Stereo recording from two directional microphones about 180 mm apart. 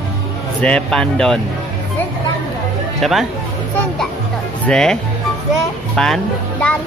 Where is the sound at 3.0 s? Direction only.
Centre (ahead or behind).